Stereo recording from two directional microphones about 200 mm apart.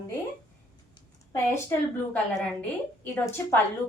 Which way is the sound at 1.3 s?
10° left (ahead or behind).